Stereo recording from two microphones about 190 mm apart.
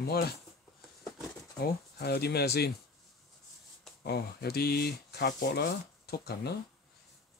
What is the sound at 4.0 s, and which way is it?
Speech, 55° left (ahead or behind).